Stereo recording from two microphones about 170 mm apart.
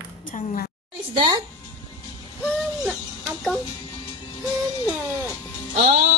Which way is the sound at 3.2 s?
5° right (ahead or behind).